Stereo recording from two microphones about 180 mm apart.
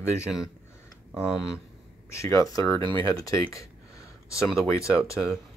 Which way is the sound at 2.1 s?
15° left (ahead or behind).